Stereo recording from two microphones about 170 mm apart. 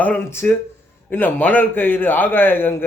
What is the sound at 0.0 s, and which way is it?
Speech, 10° left (ahead or behind).